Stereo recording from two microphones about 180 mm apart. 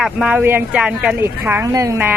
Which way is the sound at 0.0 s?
5° right (ahead or behind).